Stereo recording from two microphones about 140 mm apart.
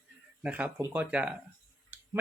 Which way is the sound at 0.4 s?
10° right (ahead or behind).